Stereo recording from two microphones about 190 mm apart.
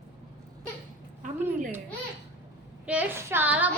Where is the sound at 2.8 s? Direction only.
10° right (ahead or behind).